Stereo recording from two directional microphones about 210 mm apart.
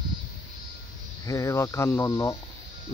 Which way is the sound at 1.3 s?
15° left (ahead or behind).